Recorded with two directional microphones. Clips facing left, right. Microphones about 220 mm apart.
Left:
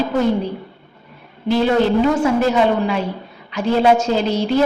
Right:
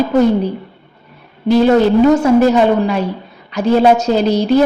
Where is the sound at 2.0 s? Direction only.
40° right (ahead or behind).